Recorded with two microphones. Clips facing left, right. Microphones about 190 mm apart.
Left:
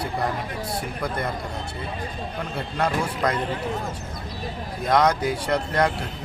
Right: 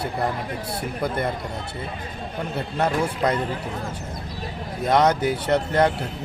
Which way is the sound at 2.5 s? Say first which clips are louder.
Right 2 dB; 25° right (ahead or behind).